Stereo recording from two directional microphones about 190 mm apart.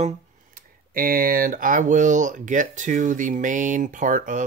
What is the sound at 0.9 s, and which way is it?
Speech, 50° right (ahead or behind).